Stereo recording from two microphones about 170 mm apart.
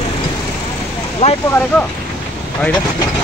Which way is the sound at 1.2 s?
40° left (ahead or behind).